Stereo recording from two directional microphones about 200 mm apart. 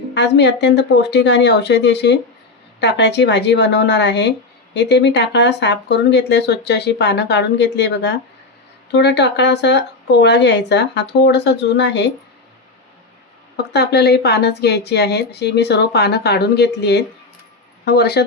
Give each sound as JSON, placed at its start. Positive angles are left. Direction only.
{"t": 0.1, "sound": "speech", "side_deg": 60}
{"t": 13.6, "sound": "speech", "side_deg": 55}